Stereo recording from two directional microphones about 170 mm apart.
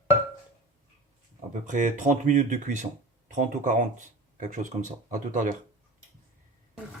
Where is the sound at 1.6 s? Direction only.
45° right (ahead or behind).